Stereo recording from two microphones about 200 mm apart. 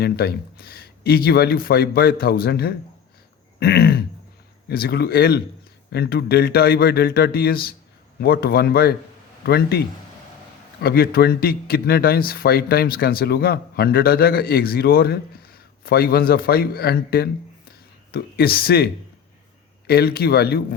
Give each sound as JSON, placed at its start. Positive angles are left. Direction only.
{"t": 0.0, "sound": "speech", "side_deg": 50}
{"t": 19.9, "sound": "speech", "side_deg": 50}